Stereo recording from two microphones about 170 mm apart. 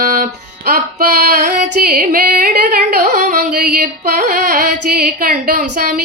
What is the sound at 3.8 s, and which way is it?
Music, 50° right (ahead or behind).